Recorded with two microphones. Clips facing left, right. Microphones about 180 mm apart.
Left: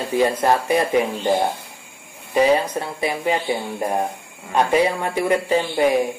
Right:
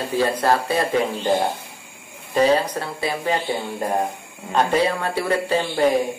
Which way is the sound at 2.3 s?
15° left (ahead or behind).